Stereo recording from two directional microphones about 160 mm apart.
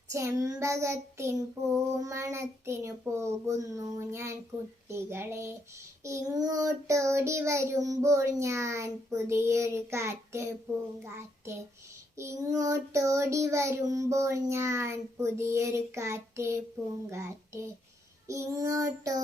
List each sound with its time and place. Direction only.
0.1 s child singing: 20° right (ahead or behind)